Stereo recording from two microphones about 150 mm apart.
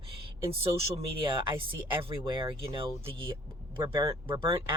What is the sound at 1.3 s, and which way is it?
Speech, 35° right (ahead or behind).